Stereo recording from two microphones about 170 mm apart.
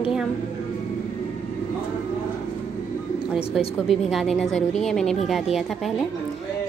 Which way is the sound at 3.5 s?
Centre (ahead or behind).